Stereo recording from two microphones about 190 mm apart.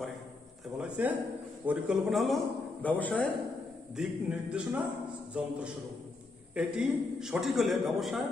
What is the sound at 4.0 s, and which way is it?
A man's voice, 5° right (ahead or behind).